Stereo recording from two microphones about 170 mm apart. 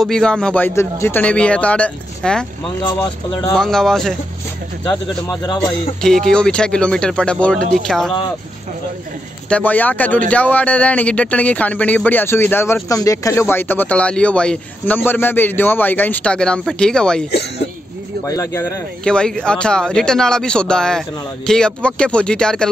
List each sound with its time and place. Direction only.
0.0 s speech: 5° left (ahead or behind)
3.5 s speech: 5° left (ahead or behind)
5.4 s speech: 25° left (ahead or behind)
5.9 s speech: 5° left (ahead or behind)
9.5 s speech: 10° left (ahead or behind)
18.2 s speech: 20° left (ahead or behind)
19.0 s speech: 5° left (ahead or behind)